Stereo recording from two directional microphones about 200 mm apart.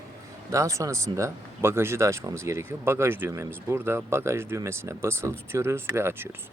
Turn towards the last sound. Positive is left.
turn(degrees=-10)  # may be behind; listen again after turning